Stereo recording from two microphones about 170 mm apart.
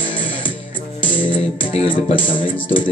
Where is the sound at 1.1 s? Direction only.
10° left (ahead or behind).